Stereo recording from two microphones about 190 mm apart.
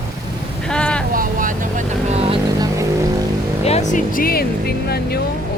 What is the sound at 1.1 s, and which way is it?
Speech, 45° right (ahead or behind).